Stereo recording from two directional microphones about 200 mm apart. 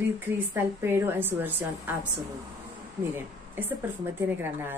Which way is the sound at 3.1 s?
10° right (ahead or behind).